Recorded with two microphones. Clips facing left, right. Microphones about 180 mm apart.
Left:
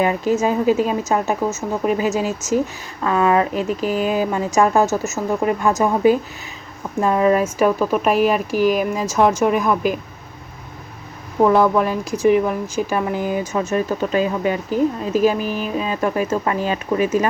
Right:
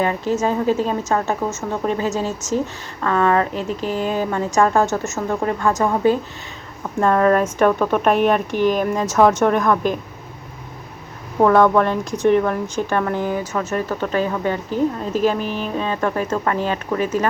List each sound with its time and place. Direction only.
0.0 s speech: 15° left (ahead or behind)
5.4 s speech: 15° left (ahead or behind)
11.4 s speech: 5° left (ahead or behind)